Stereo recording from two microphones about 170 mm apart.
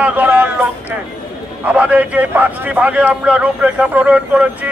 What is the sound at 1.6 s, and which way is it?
A man's voice, 10° right (ahead or behind).